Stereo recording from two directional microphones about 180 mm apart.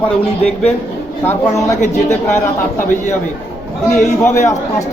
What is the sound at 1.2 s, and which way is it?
Speech, 10° left (ahead or behind).